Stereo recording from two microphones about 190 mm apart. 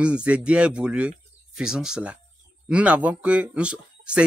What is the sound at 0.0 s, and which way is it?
Speech, 5° right (ahead or behind).